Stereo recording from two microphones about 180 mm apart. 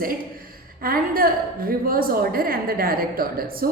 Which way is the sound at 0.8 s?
55° right (ahead or behind).